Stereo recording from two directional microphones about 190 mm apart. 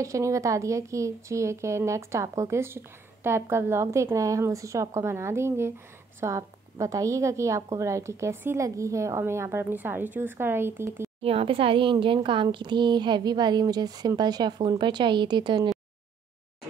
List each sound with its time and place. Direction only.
0.0 s a woman's voice: 15° right (ahead or behind)
11.2 s speech: 30° right (ahead or behind)